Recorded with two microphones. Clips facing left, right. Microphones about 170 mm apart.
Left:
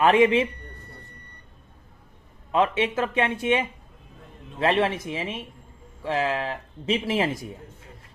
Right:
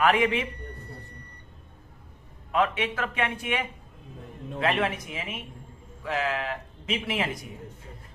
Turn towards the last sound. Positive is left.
turn(degrees=30)  # may be behind; listen again after turning